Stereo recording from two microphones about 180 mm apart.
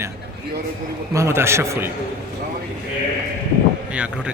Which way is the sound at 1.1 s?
15° right (ahead or behind).